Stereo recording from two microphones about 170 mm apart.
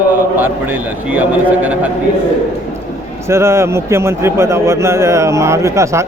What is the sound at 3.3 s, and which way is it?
Speech, 15° right (ahead or behind).